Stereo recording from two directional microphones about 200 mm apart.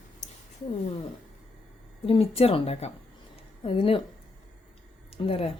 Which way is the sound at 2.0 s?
30° left (ahead or behind).